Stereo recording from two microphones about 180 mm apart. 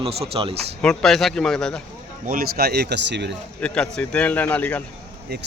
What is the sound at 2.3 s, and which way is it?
Speech, 55° right (ahead or behind).